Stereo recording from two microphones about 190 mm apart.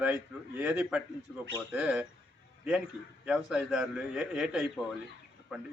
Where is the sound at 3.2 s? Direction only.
5° right (ahead or behind).